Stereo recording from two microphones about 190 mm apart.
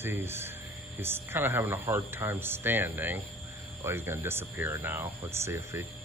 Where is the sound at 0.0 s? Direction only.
10° right (ahead or behind).